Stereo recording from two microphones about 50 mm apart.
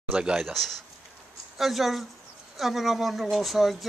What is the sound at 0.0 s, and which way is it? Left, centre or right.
Speech, centre.